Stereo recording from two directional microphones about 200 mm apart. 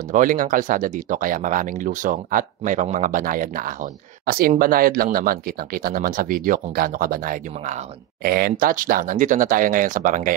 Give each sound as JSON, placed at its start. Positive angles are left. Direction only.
{"t": 0.1, "sound": "speech", "side_deg": -40}